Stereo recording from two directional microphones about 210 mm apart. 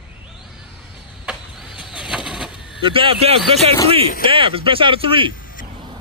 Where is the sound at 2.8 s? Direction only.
25° right (ahead or behind).